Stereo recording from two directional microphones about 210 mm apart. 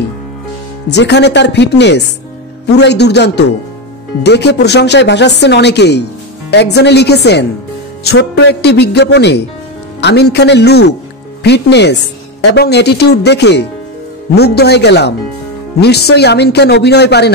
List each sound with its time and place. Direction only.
0.8 s speech: 55° left (ahead or behind)